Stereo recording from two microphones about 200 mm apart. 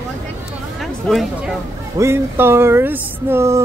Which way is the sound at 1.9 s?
10° right (ahead or behind).